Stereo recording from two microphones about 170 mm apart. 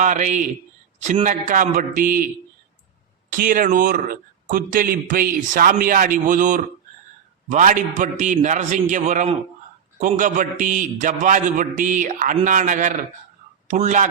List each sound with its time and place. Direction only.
0.0 s speech: 45° right (ahead or behind)
3.3 s speech: 55° right (ahead or behind)